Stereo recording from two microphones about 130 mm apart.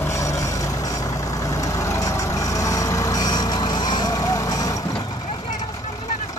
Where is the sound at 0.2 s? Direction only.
25° left (ahead or behind).